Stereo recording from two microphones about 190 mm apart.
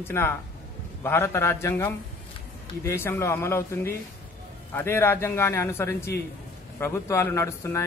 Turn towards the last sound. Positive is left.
turn(degrees=15)  # may be behind; listen again after turning